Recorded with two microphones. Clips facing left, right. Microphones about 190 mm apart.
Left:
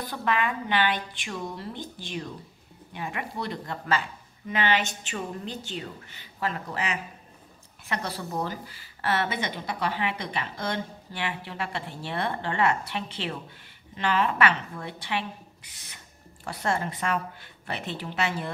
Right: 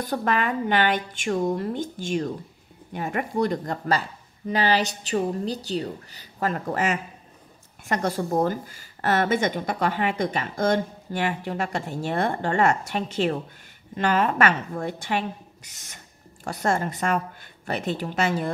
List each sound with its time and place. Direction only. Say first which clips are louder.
0.0 s speech: right 3 dB; 45° right (ahead or behind)